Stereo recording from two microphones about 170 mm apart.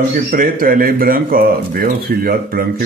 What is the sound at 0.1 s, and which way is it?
Speech, 55° right (ahead or behind).